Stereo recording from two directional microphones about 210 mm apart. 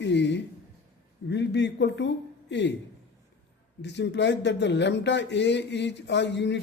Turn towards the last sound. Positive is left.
turn(degrees=55)  # may be behind; listen again after turning